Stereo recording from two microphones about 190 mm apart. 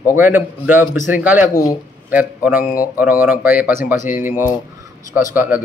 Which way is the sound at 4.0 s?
45° left (ahead or behind).